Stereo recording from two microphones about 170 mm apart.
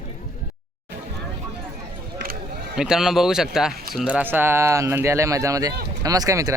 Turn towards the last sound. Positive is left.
turn(degrees=-20)  # may be behind; listen again after turning